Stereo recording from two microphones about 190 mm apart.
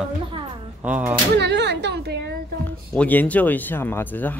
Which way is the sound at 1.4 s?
65° right (ahead or behind).